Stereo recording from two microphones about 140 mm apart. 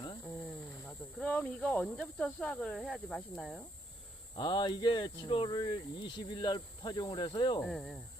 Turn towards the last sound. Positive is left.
turn(degrees=5)  # may be behind; listen again after turning